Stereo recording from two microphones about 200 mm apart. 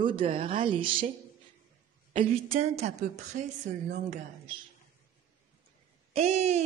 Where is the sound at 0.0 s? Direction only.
25° right (ahead or behind).